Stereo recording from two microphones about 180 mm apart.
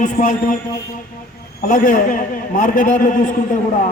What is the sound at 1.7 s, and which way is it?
A man's voice, 45° left (ahead or behind).